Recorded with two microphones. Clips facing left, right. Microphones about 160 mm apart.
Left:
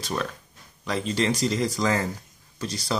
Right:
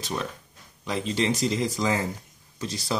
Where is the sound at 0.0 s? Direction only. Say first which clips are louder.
Left 2 dB; 20° right (ahead or behind).